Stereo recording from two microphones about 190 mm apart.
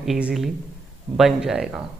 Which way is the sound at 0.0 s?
Centre (ahead or behind).